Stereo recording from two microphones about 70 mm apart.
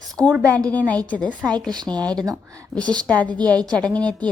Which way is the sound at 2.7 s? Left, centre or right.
Centre.